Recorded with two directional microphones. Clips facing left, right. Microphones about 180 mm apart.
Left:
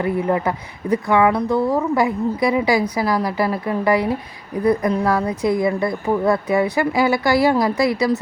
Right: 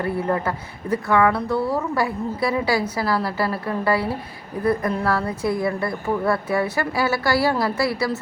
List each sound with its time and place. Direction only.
0.0 s speech: 15° left (ahead or behind)